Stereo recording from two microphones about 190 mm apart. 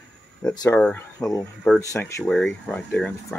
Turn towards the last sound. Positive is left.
turn(degrees=5)  # may be behind; listen again after turning